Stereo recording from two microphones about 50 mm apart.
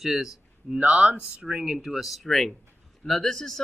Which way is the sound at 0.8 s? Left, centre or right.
Right.